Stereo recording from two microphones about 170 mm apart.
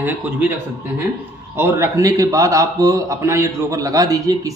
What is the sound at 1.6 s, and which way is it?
A man's voice, 15° right (ahead or behind).